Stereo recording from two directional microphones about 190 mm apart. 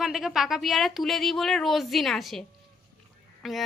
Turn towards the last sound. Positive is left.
turn(degrees=0)  # may be behind; listen again after turning